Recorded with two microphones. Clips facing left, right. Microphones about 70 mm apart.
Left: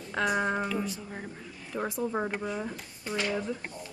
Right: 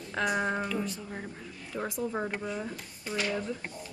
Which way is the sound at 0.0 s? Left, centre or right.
Centre.